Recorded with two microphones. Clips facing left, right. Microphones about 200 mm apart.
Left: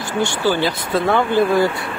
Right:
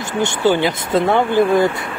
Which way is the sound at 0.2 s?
20° right (ahead or behind).